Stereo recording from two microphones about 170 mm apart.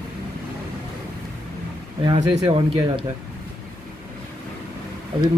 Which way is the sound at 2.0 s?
30° right (ahead or behind).